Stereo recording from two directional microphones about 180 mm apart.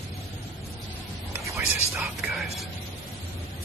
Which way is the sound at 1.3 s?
15° right (ahead or behind).